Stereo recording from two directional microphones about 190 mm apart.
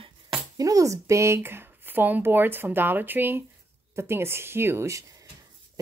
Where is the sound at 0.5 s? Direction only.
20° right (ahead or behind).